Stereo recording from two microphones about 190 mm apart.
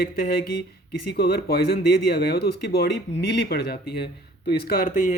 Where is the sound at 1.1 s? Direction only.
55° left (ahead or behind).